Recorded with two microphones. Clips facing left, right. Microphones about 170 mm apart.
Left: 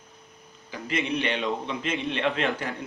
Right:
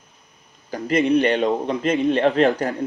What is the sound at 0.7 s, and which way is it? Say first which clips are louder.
A man's voice: right 10 dB; 40° right (ahead or behind).